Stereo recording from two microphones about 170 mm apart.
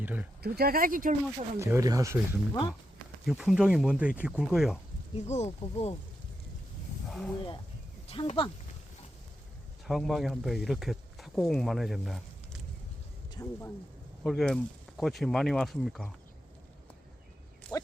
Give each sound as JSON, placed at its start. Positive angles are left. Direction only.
{"t": 0.0, "sound": "speech", "side_deg": -10}
{"t": 0.4, "sound": "speech", "side_deg": -65}
{"t": 1.5, "sound": "speech", "side_deg": -15}
{"t": 2.5, "sound": "speech", "side_deg": 30}
{"t": 3.2, "sound": "speech", "side_deg": -5}
{"t": 5.1, "sound": "speech", "side_deg": 40}
{"t": 7.1, "sound": "speech", "side_deg": 5}
{"t": 8.0, "sound": "speech", "side_deg": 35}
{"t": 9.8, "sound": "speech", "side_deg": 0}
{"t": 13.3, "sound": "speech", "side_deg": 15}
{"t": 14.3, "sound": "speech", "side_deg": 0}
{"t": 17.7, "sound": "a sound", "side_deg": 20}